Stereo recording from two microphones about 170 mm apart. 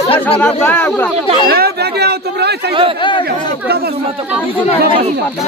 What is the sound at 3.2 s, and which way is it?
Speech, 65° right (ahead or behind).